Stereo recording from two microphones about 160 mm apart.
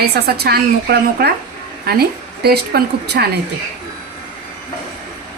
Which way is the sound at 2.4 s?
85° right.